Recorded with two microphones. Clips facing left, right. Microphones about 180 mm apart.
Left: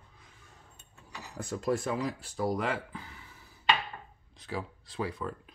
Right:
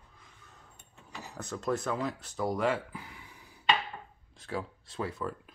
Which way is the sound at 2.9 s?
10° right (ahead or behind).